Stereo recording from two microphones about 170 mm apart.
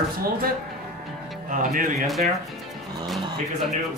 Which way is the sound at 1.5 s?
50° right (ahead or behind).